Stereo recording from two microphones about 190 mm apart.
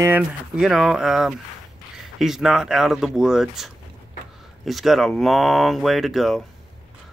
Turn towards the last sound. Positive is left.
turn(degrees=0)  # may be behind; listen again after turning